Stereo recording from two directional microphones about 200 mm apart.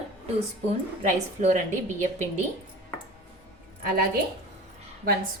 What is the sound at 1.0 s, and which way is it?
Speech, 40° right (ahead or behind).